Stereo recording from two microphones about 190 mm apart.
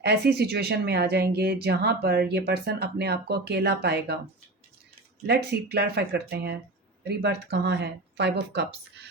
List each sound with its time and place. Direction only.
0.0 s speech: 60° right (ahead or behind)
5.2 s speech: 60° right (ahead or behind)